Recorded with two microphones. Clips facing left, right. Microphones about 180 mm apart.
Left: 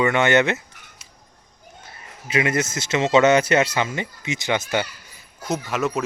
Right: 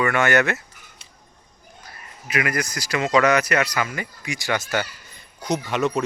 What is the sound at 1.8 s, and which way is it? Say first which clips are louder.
Speech: even; 25° left (ahead or behind).